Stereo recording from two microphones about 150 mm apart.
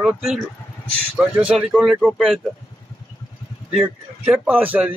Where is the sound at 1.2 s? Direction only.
5° right (ahead or behind).